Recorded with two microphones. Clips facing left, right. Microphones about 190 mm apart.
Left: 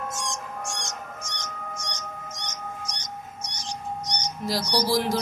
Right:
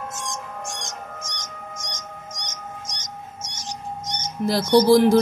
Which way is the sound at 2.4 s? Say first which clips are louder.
Even; 15° right (ahead or behind).